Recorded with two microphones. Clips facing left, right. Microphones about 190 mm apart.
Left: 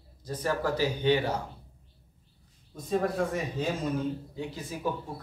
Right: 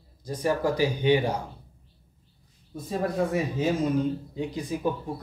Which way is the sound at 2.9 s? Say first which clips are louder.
Right 1 dB; 5° right (ahead or behind).